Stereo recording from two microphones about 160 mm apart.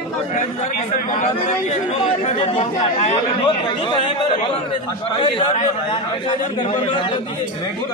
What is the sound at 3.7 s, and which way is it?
A man's voice, 30° left (ahead or behind).